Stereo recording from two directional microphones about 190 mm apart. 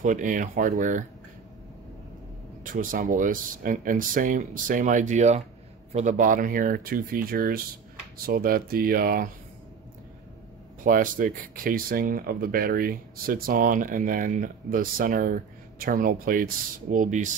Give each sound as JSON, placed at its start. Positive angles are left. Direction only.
{"t": 0.0, "sound": "speech", "side_deg": -45}
{"t": 2.6, "sound": "speech", "side_deg": -45}
{"t": 10.8, "sound": "speech", "side_deg": -45}